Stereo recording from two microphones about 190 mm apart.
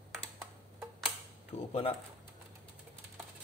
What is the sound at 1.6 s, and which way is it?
Speech, 30° left (ahead or behind).